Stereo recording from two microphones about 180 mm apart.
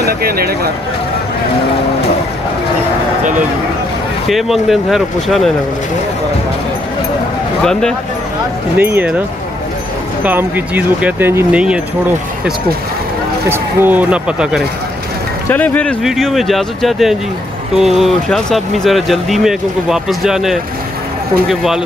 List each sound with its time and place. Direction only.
0.0 s speech: 60° right (ahead or behind)
4.3 s speech: centre (ahead or behind)
8.7 s speech: 10° right (ahead or behind)
10.2 s speech: 10° right (ahead or behind)
13.5 s speech: 10° right (ahead or behind)
15.5 s speech: 10° left (ahead or behind)